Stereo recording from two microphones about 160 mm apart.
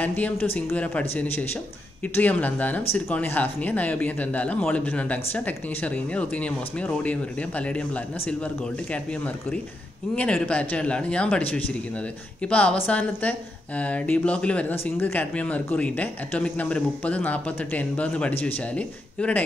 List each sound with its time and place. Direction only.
0.0 s a woman's voice: 10° left (ahead or behind)
10.1 s a woman's voice: 10° left (ahead or behind)